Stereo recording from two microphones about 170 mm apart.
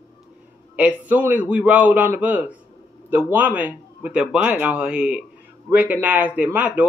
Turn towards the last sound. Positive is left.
turn(degrees=-10)  # may be behind; listen again after turning